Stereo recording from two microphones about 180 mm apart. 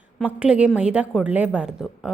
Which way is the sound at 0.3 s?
5° right (ahead or behind).